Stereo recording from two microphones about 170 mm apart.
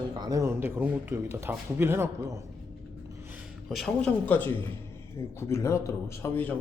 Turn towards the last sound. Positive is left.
turn(degrees=10)  # may be behind; listen again after turning